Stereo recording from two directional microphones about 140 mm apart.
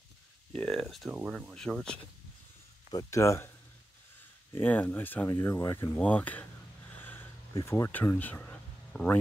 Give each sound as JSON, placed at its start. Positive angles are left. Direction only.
{"t": 0.6, "sound": "speech", "side_deg": 5}
{"t": 2.9, "sound": "speech", "side_deg": 25}
{"t": 7.0, "sound": "a sound", "side_deg": 15}
{"t": 7.6, "sound": "speech", "side_deg": 20}